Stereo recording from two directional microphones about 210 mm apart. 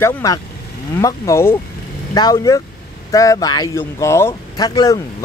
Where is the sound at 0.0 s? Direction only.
15° left (ahead or behind).